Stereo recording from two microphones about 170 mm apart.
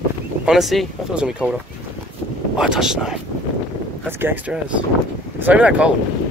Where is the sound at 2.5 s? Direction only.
5° right (ahead or behind).